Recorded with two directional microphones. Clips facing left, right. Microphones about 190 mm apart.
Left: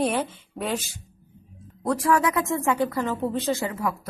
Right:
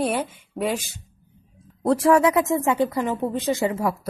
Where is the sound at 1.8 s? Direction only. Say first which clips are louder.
Right 5 dB; 25° right (ahead or behind).